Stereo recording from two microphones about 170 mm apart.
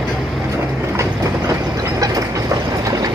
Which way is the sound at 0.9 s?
15° right (ahead or behind).